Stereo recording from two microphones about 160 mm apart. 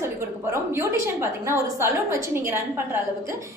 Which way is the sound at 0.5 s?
15° right (ahead or behind).